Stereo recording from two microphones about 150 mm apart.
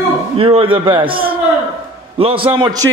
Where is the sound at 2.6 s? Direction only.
25° right (ahead or behind).